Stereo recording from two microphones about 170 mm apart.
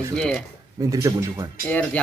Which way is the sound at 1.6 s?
10° left (ahead or behind).